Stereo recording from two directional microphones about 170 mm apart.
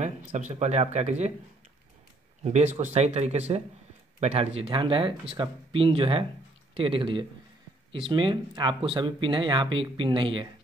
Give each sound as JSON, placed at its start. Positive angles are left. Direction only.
{"t": 0.0, "sound": "speech", "side_deg": -45}
{"t": 2.4, "sound": "speech", "side_deg": -40}